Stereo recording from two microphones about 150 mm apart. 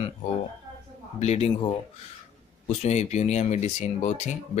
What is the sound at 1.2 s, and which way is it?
Speech, 45° left (ahead or behind).